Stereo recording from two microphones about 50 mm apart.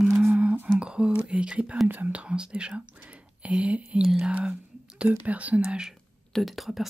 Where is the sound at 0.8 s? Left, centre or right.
Centre.